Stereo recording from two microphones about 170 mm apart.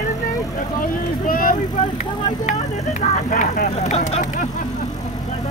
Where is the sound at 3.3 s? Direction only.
50° left (ahead or behind).